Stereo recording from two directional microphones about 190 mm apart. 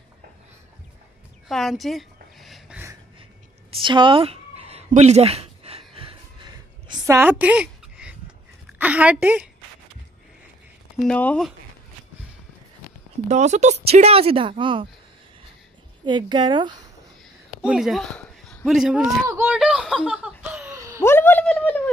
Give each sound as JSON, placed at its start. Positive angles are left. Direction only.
{"t": 1.5, "sound": "a sound", "side_deg": 0}
{"t": 3.8, "sound": "a sound", "side_deg": -25}
{"t": 7.2, "sound": "a sound", "side_deg": -10}
{"t": 8.7, "sound": "a woman's voice", "side_deg": -10}
{"t": 11.0, "sound": "speech", "side_deg": 5}
{"t": 13.3, "sound": "speech", "side_deg": -40}
{"t": 16.1, "sound": "speech", "side_deg": -25}
{"t": 17.6, "sound": "speech", "side_deg": -5}
{"t": 19.2, "sound": "laughter", "side_deg": -10}
{"t": 21.0, "sound": "speech", "side_deg": 10}